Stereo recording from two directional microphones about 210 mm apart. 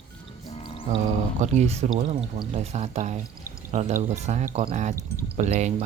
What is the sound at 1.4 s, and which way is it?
Speech, 30° right (ahead or behind).